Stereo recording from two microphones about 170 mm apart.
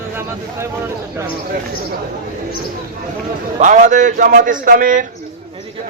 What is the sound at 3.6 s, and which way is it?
A man's voice, 45° right (ahead or behind).